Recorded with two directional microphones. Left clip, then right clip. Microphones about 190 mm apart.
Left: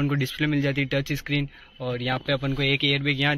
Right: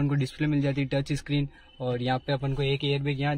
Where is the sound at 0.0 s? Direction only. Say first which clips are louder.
Left 4 dB; 5° right (ahead or behind).